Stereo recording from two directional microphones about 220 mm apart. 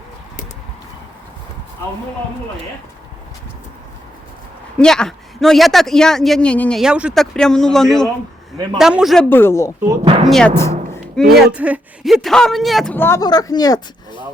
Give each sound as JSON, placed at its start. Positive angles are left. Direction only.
{"t": 4.8, "sound": "a man's voice", "side_deg": 5}
{"t": 9.8, "sound": "speech", "side_deg": -15}
{"t": 10.2, "sound": "speech", "side_deg": 5}
{"t": 11.3, "sound": "a man's voice", "side_deg": -5}